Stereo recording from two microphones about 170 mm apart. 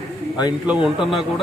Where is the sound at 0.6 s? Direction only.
Centre (ahead or behind).